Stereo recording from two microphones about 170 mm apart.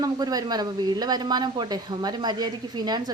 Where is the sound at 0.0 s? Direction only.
20° right (ahead or behind).